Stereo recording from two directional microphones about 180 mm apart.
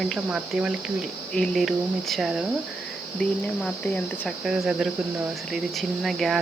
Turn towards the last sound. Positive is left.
turn(degrees=0)  # may be behind; listen again after turning